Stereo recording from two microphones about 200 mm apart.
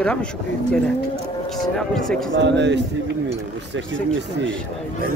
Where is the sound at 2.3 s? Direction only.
60° right (ahead or behind).